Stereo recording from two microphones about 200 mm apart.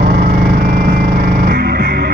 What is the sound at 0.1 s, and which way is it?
Music, 45° right (ahead or behind).